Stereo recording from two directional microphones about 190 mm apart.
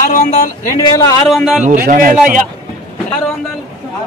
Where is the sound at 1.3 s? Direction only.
Centre (ahead or behind).